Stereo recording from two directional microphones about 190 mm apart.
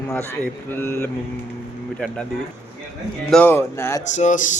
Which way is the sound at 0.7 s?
10° left (ahead or behind).